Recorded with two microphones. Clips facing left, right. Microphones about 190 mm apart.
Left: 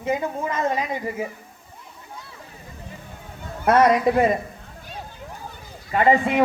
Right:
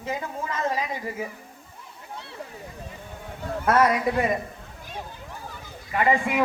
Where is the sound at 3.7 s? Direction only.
20° left (ahead or behind).